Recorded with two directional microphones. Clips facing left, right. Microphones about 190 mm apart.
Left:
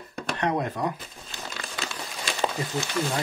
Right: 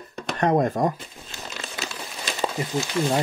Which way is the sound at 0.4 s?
45° right (ahead or behind).